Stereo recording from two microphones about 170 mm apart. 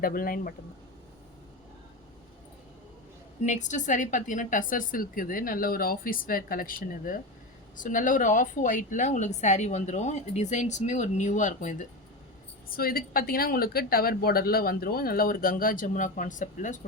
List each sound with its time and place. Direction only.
0.0 s a woman's voice: 55° left (ahead or behind)
3.4 s a woman's voice: 45° left (ahead or behind)
12.6 s a woman's voice: 60° left (ahead or behind)